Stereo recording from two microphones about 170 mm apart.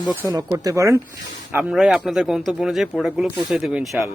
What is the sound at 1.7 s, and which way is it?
Speech, centre (ahead or behind).